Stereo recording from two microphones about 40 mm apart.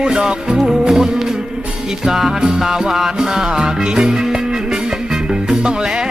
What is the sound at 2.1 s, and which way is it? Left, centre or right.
Music, centre.